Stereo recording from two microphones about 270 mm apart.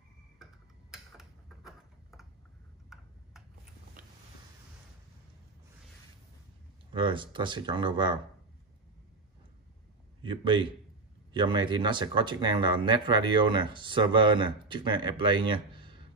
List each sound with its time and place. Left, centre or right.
0.9 s tick-tock: centre
4.0 s a sound: right
6.9 s speech: centre
10.2 s a man's voice: centre